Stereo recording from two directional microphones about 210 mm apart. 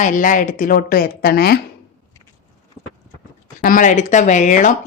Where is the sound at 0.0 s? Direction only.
40° left (ahead or behind).